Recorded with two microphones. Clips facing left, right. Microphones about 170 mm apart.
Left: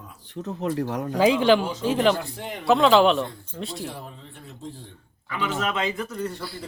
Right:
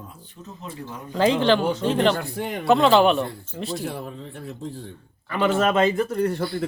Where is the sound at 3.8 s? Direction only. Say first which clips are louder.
Right 5 dB; 60° right (ahead or behind).